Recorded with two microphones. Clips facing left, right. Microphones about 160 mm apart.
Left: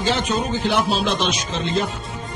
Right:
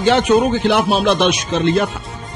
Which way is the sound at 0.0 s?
65° right (ahead or behind).